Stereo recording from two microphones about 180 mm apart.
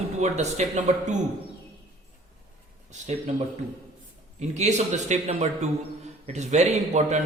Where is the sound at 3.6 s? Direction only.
45° right (ahead or behind).